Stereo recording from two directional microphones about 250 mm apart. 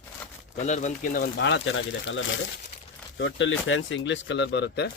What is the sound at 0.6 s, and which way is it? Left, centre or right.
Speech, left.